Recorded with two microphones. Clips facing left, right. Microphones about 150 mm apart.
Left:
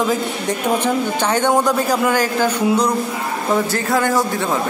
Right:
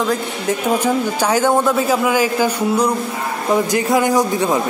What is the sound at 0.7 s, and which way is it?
A man's voice, 10° right (ahead or behind).